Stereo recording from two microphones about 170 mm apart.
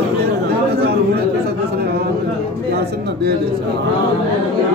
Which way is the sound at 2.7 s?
70° right (ahead or behind).